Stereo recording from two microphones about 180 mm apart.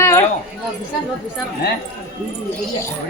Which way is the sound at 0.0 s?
15° left (ahead or behind).